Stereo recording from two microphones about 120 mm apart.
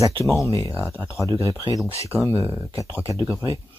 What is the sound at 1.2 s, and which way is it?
Speech, 30° right (ahead or behind).